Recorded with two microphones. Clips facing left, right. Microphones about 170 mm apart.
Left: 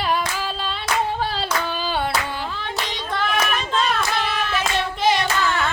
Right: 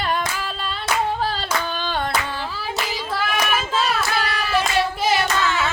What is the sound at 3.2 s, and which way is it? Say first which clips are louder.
Hands: left 1 dB; 5° right (ahead or behind).